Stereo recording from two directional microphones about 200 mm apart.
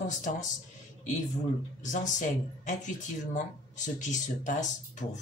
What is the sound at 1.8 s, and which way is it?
Speech, 40° left (ahead or behind).